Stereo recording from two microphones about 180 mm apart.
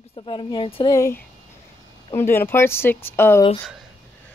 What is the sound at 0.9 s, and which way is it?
Speech, 15° left (ahead or behind).